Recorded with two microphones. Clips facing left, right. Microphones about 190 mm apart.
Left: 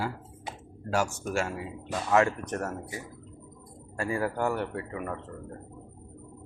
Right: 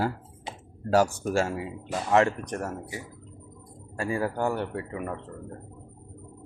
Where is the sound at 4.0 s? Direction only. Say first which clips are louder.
Right 1 dB; 25° right (ahead or behind).